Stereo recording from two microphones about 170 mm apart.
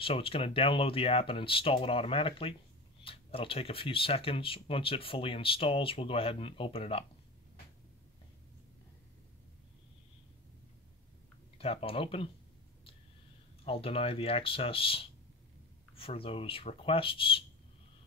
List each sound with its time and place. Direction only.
0.0 s speech: 35° left (ahead or behind)
11.5 s speech: 35° left (ahead or behind)
13.7 s speech: 35° left (ahead or behind)